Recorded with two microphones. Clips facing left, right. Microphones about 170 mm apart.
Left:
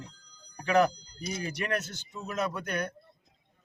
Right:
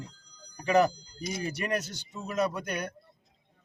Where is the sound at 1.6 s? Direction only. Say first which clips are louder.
Left 1 dB; 10° right (ahead or behind).